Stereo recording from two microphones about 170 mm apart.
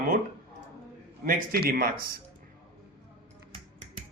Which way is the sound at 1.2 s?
60° right (ahead or behind).